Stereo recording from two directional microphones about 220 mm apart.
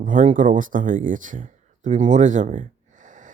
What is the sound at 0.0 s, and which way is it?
Speech, 35° right (ahead or behind).